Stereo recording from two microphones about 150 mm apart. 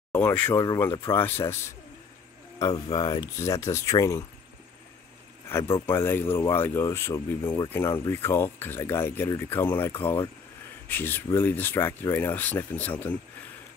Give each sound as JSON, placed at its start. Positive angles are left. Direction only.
{"t": 0.1, "sound": "a sound", "side_deg": 10}
{"t": 0.7, "sound": "speech", "side_deg": 20}
{"t": 2.6, "sound": "speech", "side_deg": 30}
{"t": 5.9, "sound": "speech", "side_deg": 15}